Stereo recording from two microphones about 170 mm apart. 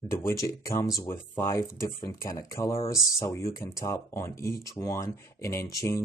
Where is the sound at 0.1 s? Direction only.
20° left (ahead or behind).